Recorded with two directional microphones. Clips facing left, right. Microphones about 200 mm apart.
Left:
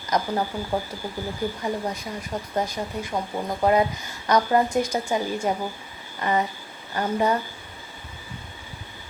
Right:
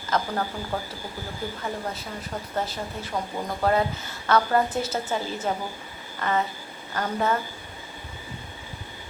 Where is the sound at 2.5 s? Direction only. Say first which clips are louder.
Left 3 dB; 15° left (ahead or behind).